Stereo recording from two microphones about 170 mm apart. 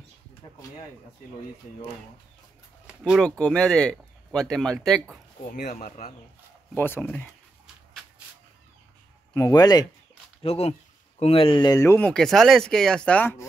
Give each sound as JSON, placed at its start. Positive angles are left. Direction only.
{"t": 3.0, "sound": "speech", "side_deg": 0}
{"t": 5.6, "sound": "speech", "side_deg": 45}
{"t": 6.7, "sound": "speech", "side_deg": 10}
{"t": 9.3, "sound": "speech", "side_deg": 20}
{"t": 10.4, "sound": "speech", "side_deg": 35}